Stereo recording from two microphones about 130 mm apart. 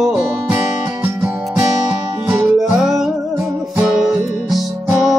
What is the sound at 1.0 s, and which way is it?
Music, 20° right (ahead or behind).